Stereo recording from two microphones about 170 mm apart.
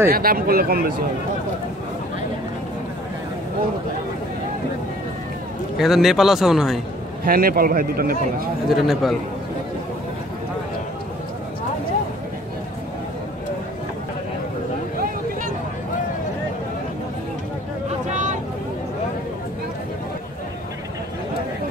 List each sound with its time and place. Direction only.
0.1 s a man's voice: 60° right (ahead or behind)
5.8 s a man's voice: centre (ahead or behind)
7.2 s a man's voice: 60° right (ahead or behind)
8.6 s a man's voice: centre (ahead or behind)
18.0 s vehicle: 45° right (ahead or behind)